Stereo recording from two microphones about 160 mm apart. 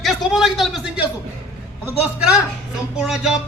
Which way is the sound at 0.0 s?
Centre (ahead or behind).